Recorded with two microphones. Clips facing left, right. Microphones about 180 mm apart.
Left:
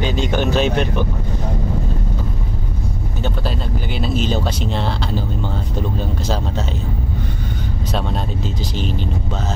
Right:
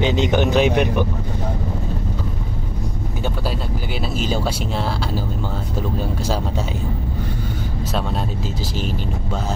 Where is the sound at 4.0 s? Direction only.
5° right (ahead or behind).